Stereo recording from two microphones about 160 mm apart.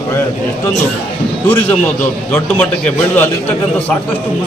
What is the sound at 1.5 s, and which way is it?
A man's voice, 10° left (ahead or behind).